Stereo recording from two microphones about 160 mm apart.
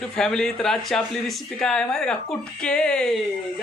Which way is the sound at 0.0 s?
5° left (ahead or behind).